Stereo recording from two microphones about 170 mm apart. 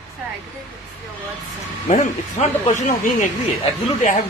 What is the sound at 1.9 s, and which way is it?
A man's voice, 45° left (ahead or behind).